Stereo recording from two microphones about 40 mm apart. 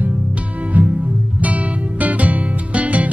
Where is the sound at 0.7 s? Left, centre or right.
Right.